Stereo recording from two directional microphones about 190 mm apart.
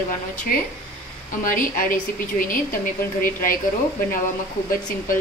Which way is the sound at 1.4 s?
45° left (ahead or behind).